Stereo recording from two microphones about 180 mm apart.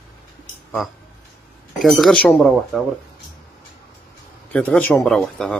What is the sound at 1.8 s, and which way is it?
Speech, centre (ahead or behind).